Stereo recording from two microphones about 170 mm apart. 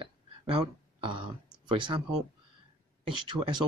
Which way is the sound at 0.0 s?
30° right (ahead or behind).